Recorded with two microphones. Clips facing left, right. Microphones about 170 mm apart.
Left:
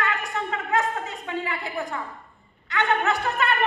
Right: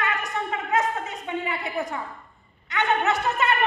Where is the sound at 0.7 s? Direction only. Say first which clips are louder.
Even; 20° right (ahead or behind).